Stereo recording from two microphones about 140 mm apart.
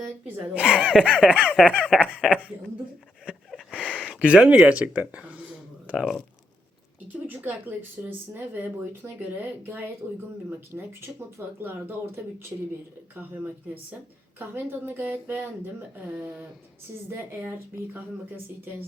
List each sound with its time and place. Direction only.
0.3 s speech: 10° right (ahead or behind)
3.2 s a sound: 5° right (ahead or behind)
4.0 s speech: 5° right (ahead or behind)
7.3 s speech: 10° right (ahead or behind)
17.1 s speech: 15° right (ahead or behind)